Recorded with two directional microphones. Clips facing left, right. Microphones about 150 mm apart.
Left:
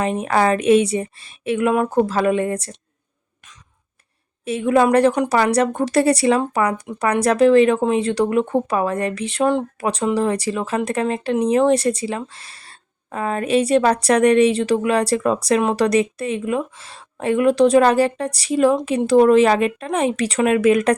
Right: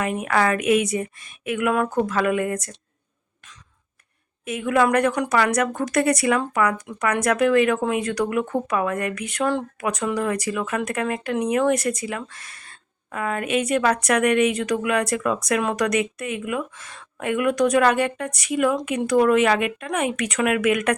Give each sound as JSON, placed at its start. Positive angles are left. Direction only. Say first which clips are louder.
{"t": 0.0, "sound": "speech", "louder": "left 3 dB", "side_deg": 30}
{"t": 4.4, "sound": "speech", "louder": "left 4 dB", "side_deg": 30}